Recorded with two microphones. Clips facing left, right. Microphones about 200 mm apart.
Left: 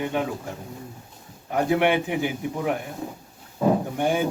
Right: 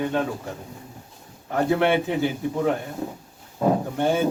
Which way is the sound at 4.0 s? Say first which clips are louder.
Right 3 dB; 15° left (ahead or behind).